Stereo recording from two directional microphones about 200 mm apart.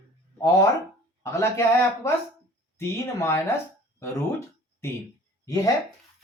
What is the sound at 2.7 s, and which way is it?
Speech, 15° left (ahead or behind).